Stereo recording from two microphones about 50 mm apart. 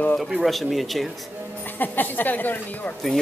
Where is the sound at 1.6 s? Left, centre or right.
Left.